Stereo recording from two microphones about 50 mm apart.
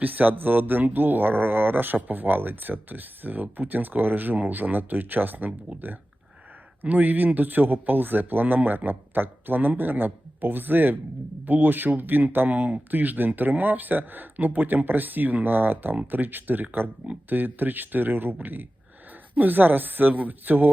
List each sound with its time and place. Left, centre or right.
0.0 s speech: right